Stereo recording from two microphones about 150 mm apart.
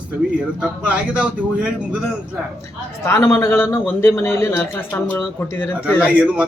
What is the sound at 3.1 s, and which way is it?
A man's voice, 20° left (ahead or behind).